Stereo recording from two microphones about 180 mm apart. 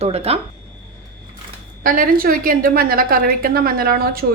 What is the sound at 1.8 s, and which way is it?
A woman's voice, 50° right (ahead or behind).